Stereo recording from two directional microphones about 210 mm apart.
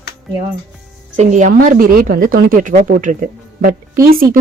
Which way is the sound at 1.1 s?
35° right (ahead or behind).